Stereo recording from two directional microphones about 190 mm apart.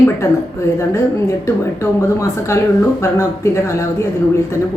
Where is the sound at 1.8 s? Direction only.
15° left (ahead or behind).